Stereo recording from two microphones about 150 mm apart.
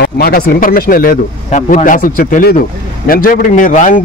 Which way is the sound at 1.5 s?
55° left (ahead or behind).